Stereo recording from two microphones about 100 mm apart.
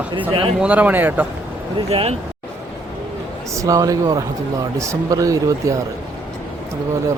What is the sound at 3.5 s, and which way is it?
Speech, 35° right (ahead or behind).